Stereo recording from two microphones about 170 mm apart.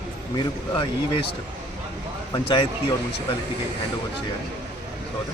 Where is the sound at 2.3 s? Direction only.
30° left (ahead or behind).